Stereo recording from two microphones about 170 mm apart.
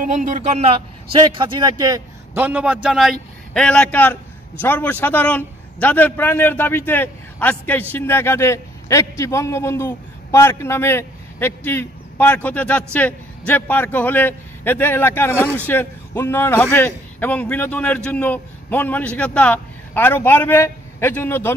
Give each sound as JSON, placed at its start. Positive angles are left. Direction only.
{"t": 0.0, "sound": "a man's voice", "side_deg": -45}
{"t": 1.1, "sound": "a man's voice", "side_deg": -30}